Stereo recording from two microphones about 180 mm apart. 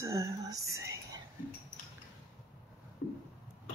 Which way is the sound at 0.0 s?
15° right (ahead or behind).